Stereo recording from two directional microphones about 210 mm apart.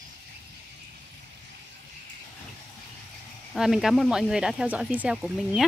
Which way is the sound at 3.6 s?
Centre (ahead or behind).